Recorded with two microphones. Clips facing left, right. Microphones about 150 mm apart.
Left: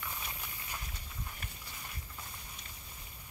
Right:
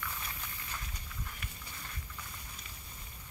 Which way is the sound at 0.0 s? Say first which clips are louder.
Even; 20° left (ahead or behind).